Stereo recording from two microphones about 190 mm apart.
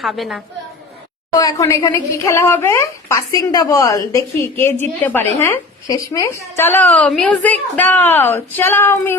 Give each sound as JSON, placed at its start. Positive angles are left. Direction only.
{"t": 0.0, "sound": "a woman's voice", "side_deg": 0}
{"t": 1.4, "sound": "a woman's voice", "side_deg": 20}